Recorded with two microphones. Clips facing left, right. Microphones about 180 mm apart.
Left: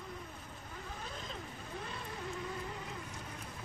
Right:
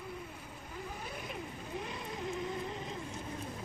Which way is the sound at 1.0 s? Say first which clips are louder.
Right 3 dB; 10° right (ahead or behind).